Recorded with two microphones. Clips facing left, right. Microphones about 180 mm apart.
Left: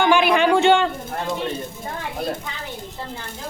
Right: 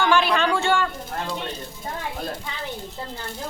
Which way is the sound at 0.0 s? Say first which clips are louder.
Left 4 dB; 15° left (ahead or behind).